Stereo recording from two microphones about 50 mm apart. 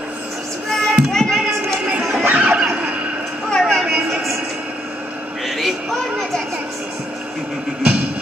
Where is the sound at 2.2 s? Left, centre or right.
Right.